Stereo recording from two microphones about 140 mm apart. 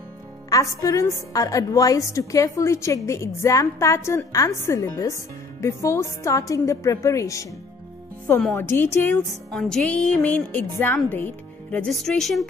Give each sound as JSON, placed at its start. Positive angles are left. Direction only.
{"t": 0.5, "sound": "a woman's voice", "side_deg": 25}
{"t": 8.5, "sound": "a woman's voice", "side_deg": 15}
{"t": 9.5, "sound": "a woman's voice", "side_deg": 5}